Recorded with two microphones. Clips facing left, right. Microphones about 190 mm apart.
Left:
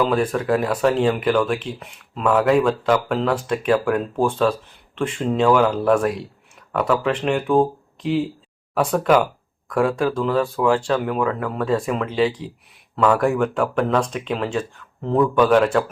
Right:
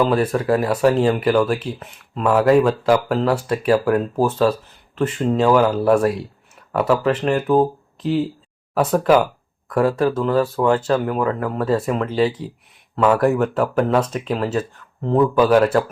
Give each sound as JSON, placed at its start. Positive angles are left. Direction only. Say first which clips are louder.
{"t": 0.0, "sound": "speech", "louder": "right 2 dB", "side_deg": -5}